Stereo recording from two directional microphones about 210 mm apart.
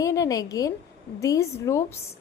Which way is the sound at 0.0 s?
15° left (ahead or behind).